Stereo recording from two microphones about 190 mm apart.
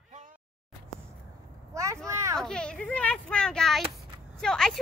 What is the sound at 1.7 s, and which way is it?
Vehicle, 15° right (ahead or behind).